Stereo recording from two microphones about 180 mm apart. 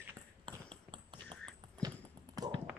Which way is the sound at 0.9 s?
25° right (ahead or behind).